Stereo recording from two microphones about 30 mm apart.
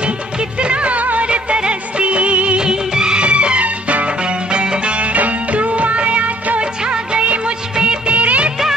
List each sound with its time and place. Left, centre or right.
0.6 s music: right
1.2 s music of bollywood: right
2.6 s music of bollywood: right
3.2 s music: right
4.2 s music: right
6.6 s music of bollywood: right
8.1 s music of bollywood: right